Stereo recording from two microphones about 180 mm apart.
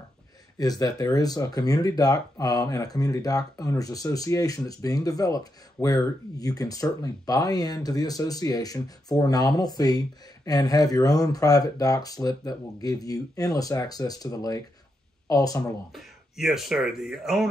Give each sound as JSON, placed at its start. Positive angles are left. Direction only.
{"t": 0.6, "sound": "speech", "side_deg": 20}
{"t": 15.9, "sound": "speech", "side_deg": 0}